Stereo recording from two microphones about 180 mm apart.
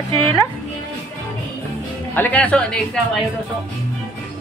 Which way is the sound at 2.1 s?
10° left (ahead or behind).